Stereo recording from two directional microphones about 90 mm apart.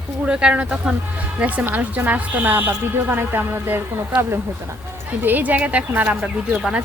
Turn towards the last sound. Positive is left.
turn(degrees=-5)  # may be behind; listen again after turning